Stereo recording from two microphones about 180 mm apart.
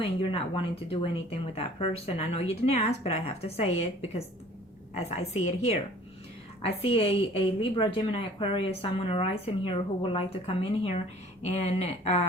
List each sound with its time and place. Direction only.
0.0 s a woman's voice: 30° left (ahead or behind)